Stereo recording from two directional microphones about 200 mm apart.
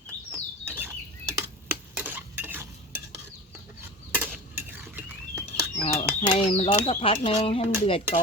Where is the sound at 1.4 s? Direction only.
10° right (ahead or behind).